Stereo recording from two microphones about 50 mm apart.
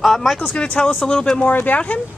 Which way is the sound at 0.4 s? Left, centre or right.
Centre.